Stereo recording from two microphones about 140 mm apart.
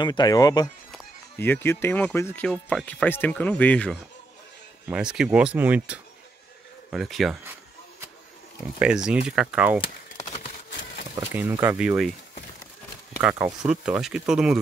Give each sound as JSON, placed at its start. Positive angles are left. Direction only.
{"t": 0.0, "sound": "speech", "side_deg": 30}
{"t": 1.4, "sound": "speech", "side_deg": 15}
{"t": 4.8, "sound": "speech", "side_deg": -5}
{"t": 8.7, "sound": "speech", "side_deg": -5}
{"t": 11.1, "sound": "speech", "side_deg": -20}
{"t": 13.2, "sound": "speech", "side_deg": -5}